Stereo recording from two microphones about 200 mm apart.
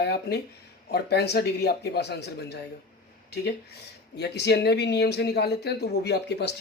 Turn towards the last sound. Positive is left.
turn(degrees=55)  # may be behind; listen again after turning